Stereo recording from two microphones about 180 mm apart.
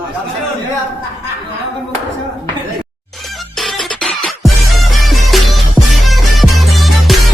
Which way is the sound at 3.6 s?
Centre (ahead or behind).